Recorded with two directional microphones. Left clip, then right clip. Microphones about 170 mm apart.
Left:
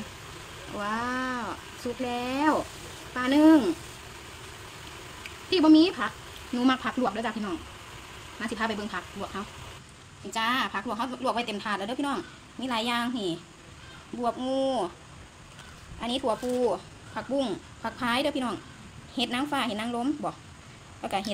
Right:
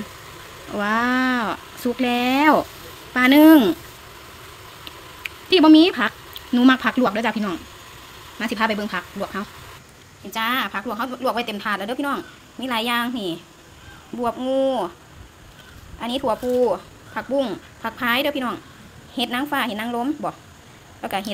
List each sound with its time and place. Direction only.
0.7 s speech: 40° right (ahead or behind)
5.5 s speech: 40° right (ahead or behind)
10.3 s speech: 10° right (ahead or behind)
16.0 s speech: 10° right (ahead or behind)